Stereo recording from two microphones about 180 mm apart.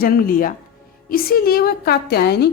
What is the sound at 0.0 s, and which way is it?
A woman's voice, 55° left (ahead or behind).